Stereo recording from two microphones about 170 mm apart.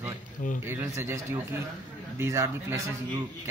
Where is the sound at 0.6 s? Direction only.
15° right (ahead or behind).